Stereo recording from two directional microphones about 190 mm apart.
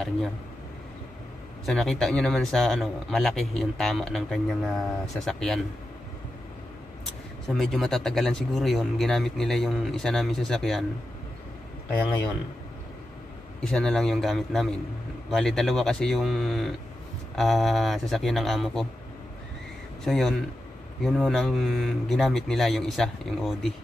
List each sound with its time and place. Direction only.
1.7 s speech: centre (ahead or behind)
7.4 s speech: centre (ahead or behind)
13.6 s speech: 5° left (ahead or behind)
20.1 s speech: centre (ahead or behind)